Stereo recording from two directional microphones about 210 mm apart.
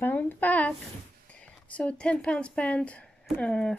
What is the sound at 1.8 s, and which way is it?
Speech, 5° left (ahead or behind).